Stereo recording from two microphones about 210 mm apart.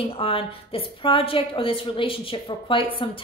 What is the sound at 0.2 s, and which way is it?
A woman's voice, 25° left (ahead or behind).